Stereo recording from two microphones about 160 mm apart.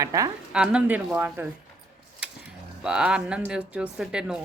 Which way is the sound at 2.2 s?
5° right (ahead or behind).